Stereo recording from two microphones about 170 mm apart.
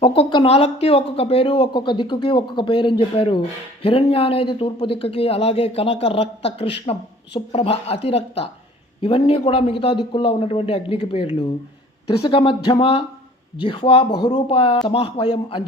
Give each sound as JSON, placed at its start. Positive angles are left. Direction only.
{"t": 0.0, "sound": "speech", "side_deg": 30}